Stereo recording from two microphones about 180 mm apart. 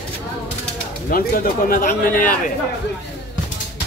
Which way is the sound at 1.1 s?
55° left (ahead or behind).